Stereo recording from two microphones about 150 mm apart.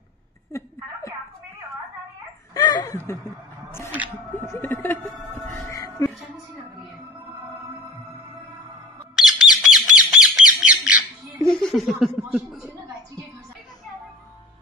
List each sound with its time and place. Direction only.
0.5 s a sound: 20° left (ahead or behind)
2.5 s a sound: 25° left (ahead or behind)
3.9 s speech: 10° right (ahead or behind)
4.5 s speech: 10° left (ahead or behind)
9.1 s bird: 5° right (ahead or behind)
10.1 s squawk: 5° right (ahead or behind)
11.5 s speech: 5° left (ahead or behind)